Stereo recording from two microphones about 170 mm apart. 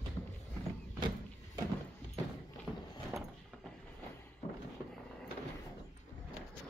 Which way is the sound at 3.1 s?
15° right (ahead or behind).